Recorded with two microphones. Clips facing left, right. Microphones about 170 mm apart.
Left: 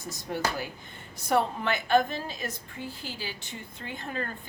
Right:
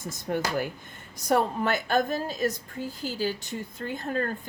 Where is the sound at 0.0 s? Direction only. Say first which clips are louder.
Right 2 dB; 50° right (ahead or behind).